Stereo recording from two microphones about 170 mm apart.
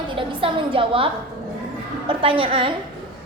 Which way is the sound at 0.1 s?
30° right (ahead or behind).